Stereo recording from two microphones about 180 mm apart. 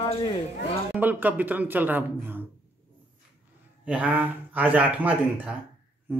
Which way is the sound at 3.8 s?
10° right (ahead or behind).